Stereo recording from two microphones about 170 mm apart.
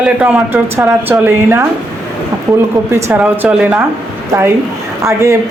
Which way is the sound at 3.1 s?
10° right (ahead or behind).